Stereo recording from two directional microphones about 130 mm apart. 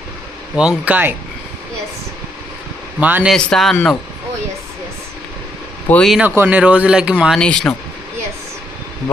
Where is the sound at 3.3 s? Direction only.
5° left (ahead or behind).